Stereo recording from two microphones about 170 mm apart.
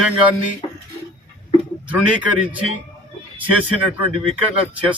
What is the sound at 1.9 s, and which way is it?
Speech, 10° right (ahead or behind).